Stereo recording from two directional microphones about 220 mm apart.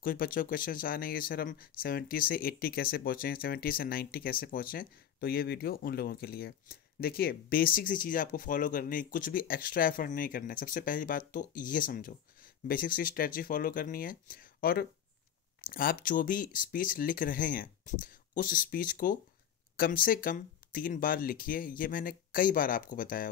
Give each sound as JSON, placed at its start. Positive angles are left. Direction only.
{"t": 0.0, "sound": "speech", "side_deg": 40}